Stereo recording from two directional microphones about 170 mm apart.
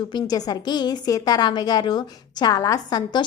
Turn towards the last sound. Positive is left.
turn(degrees=25)  # may be behind; listen again after turning